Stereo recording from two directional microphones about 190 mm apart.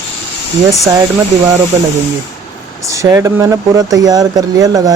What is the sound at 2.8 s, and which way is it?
Speech, 15° right (ahead or behind).